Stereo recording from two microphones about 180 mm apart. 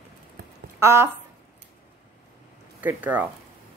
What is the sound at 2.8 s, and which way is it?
Speech, 10° right (ahead or behind).